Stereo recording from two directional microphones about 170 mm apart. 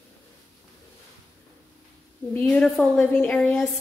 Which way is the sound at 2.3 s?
5° left (ahead or behind).